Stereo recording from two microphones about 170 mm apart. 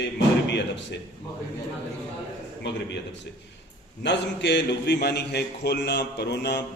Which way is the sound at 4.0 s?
90° left.